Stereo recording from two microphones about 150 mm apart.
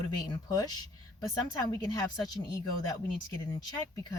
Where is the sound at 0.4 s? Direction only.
25° left (ahead or behind).